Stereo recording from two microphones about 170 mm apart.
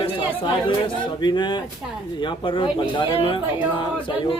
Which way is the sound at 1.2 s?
25° left (ahead or behind).